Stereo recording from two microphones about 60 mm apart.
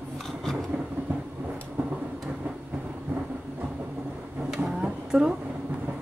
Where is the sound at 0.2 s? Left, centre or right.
Centre.